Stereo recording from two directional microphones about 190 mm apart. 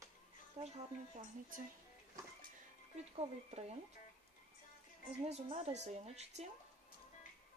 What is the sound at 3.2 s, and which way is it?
Speech, 35° right (ahead or behind).